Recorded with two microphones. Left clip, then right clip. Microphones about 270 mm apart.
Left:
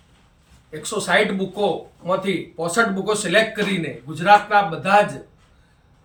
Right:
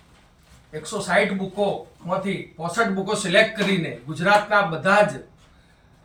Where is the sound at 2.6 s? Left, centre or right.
Left.